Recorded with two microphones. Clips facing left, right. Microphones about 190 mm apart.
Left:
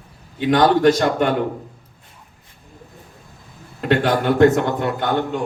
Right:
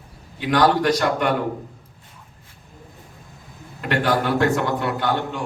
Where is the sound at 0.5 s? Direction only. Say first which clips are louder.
Left 4 dB; 25° left (ahead or behind).